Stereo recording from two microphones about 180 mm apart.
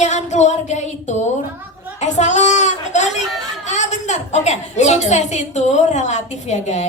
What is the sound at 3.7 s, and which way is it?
A woman's voice, 40° left (ahead or behind).